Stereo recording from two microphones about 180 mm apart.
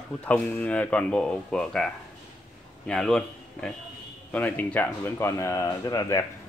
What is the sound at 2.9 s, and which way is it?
Speech, 5° left (ahead or behind).